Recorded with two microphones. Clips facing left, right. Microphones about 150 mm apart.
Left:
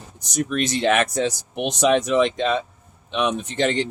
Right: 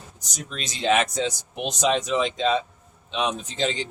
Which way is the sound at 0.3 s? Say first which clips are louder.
Left 13 dB; 65° left (ahead or behind).